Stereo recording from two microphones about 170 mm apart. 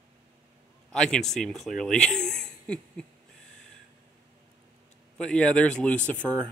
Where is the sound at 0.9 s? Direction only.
5° left (ahead or behind).